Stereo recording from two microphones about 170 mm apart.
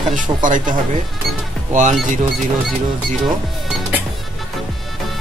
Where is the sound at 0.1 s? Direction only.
50° right (ahead or behind).